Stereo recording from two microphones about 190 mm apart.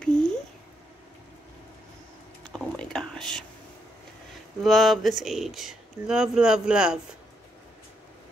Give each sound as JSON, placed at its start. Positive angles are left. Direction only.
{"t": 0.0, "sound": "a sound", "side_deg": 5}
{"t": 2.5, "sound": "whispering", "side_deg": 0}
{"t": 4.6, "sound": "speech", "side_deg": 0}